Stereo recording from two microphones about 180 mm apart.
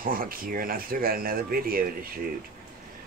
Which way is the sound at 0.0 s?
50° right (ahead or behind).